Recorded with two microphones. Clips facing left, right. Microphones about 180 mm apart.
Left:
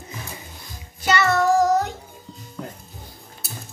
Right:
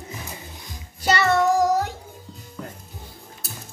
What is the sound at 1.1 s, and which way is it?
Child singing, 30° right (ahead or behind).